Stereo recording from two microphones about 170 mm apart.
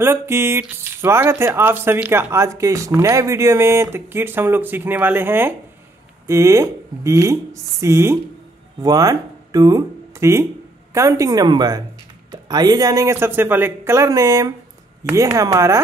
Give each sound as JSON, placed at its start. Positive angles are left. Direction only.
{"t": 0.0, "sound": "a woman's voice", "side_deg": -15}